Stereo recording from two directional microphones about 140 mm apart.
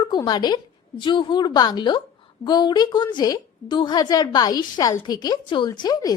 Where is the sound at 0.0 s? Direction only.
30° left (ahead or behind).